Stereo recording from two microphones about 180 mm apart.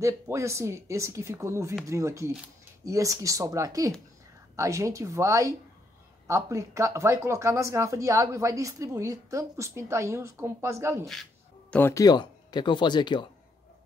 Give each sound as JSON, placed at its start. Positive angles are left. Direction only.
{"t": 0.0, "sound": "speech", "side_deg": -15}
{"t": 11.7, "sound": "speech", "side_deg": 15}